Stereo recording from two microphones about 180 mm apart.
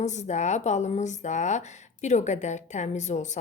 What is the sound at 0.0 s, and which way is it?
Speech, 40° left (ahead or behind).